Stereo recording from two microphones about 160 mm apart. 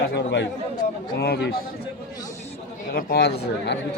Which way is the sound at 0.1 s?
90° left.